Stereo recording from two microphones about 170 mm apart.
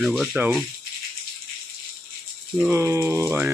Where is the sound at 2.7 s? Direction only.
15° right (ahead or behind).